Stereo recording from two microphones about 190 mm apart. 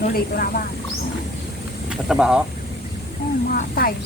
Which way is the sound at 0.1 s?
55° left (ahead or behind).